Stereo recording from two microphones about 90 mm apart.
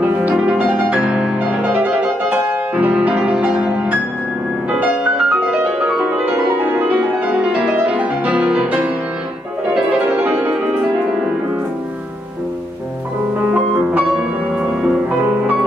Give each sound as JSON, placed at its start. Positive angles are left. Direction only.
{"t": 0.0, "sound": "music", "side_deg": -15}
{"t": 4.6, "sound": "music", "side_deg": -10}
{"t": 9.9, "sound": "music", "side_deg": -15}